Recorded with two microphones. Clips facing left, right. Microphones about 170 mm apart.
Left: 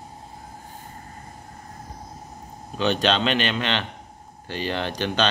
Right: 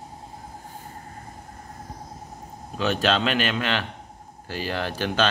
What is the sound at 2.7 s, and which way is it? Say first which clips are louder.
Speech: left 1 dB; 5° right (ahead or behind).